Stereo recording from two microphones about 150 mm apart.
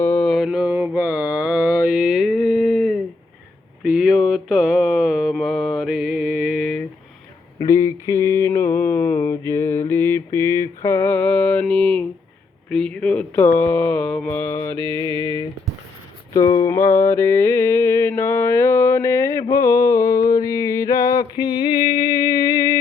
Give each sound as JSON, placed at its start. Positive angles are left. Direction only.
{"t": 0.0, "sound": "mantra", "side_deg": 10}
{"t": 7.6, "sound": "mantra", "side_deg": 20}
{"t": 11.6, "sound": "a sound", "side_deg": 5}
{"t": 12.7, "sound": "mantra", "side_deg": 5}
{"t": 14.8, "sound": "music", "side_deg": -30}
{"t": 16.3, "sound": "mantra", "side_deg": 25}
{"t": 21.9, "sound": "a sound", "side_deg": 30}